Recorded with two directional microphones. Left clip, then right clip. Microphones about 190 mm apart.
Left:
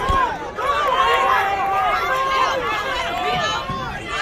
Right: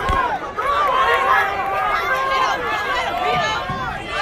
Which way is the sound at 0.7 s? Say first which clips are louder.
Right 1 dB; 45° left (ahead or behind).